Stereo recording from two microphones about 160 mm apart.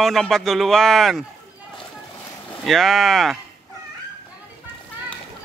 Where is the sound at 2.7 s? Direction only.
Centre (ahead or behind).